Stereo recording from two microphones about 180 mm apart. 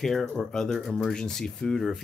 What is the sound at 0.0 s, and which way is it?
Speech, centre (ahead or behind).